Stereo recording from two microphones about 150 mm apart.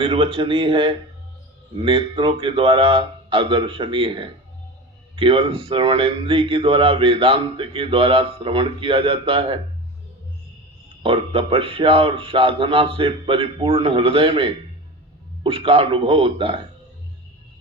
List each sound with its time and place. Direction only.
0.0 s a man's voice: 35° right (ahead or behind)
11.0 s a man's voice: 40° right (ahead or behind)